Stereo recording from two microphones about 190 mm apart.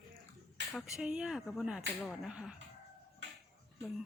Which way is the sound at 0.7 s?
5° right (ahead or behind).